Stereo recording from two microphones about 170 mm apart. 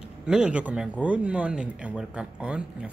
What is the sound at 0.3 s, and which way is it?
Speech, 5° right (ahead or behind).